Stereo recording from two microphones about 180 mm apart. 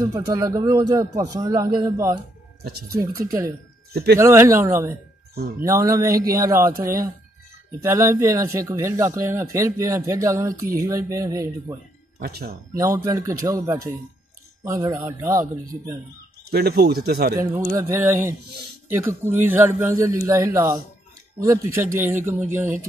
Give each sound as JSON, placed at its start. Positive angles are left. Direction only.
{"t": 0.3, "sound": "a man's voice", "side_deg": -20}
{"t": 2.6, "sound": "speech", "side_deg": -60}
{"t": 3.0, "sound": "speech", "side_deg": -20}
{"t": 3.9, "sound": "speech", "side_deg": -60}
{"t": 4.2, "sound": "a man's voice", "side_deg": -15}
{"t": 12.2, "sound": "speech", "side_deg": -60}
{"t": 12.7, "sound": "speech", "side_deg": -15}
{"t": 14.9, "sound": "speech", "side_deg": -10}
{"t": 16.4, "sound": "speech", "side_deg": -60}
{"t": 17.4, "sound": "speech", "side_deg": -15}